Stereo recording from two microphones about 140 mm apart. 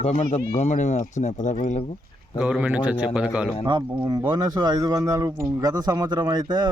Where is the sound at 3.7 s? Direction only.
30° right (ahead or behind).